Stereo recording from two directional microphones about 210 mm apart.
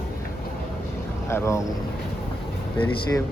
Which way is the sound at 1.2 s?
15° left (ahead or behind).